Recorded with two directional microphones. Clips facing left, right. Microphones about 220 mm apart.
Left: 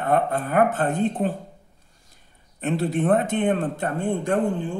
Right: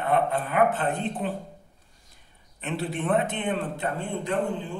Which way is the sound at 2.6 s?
45° left (ahead or behind).